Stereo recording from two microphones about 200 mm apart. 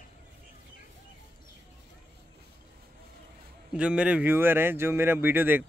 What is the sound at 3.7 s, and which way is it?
Speech, 5° right (ahead or behind).